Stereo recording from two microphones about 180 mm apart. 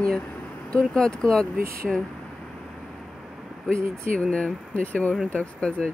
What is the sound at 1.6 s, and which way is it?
Speech, 55° right (ahead or behind).